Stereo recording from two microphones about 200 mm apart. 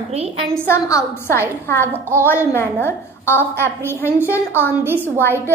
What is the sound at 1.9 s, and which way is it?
Speech, 10° right (ahead or behind).